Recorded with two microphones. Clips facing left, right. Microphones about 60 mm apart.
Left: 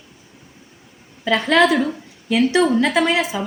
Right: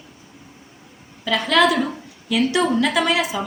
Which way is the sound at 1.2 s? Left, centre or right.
Left.